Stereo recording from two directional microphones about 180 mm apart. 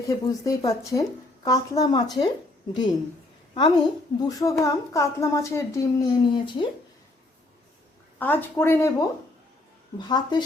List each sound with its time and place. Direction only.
0.0 s speech: 20° left (ahead or behind)
3.5 s a woman's voice: 25° left (ahead or behind)
8.2 s a woman's voice: 10° left (ahead or behind)